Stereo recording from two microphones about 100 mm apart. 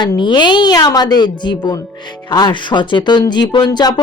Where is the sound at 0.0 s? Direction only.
50° left (ahead or behind).